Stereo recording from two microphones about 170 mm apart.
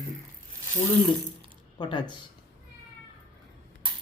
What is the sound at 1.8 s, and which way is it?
Speech, 25° left (ahead or behind).